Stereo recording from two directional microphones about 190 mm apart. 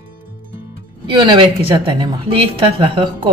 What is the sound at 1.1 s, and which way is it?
A woman's voice, 25° right (ahead or behind).